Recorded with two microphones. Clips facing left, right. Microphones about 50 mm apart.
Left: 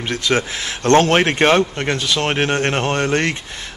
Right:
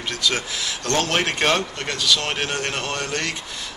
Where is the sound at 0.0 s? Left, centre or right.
Left.